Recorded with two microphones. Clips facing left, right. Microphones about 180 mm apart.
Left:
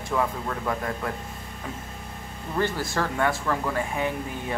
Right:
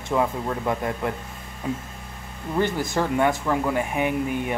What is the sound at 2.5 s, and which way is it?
Speech, 20° right (ahead or behind).